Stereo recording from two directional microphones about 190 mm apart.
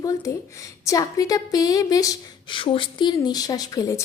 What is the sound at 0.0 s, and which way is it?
A woman's voice, 15° left (ahead or behind).